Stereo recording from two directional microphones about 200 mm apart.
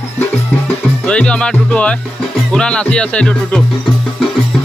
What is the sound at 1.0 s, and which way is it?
A man's voice, 5° left (ahead or behind).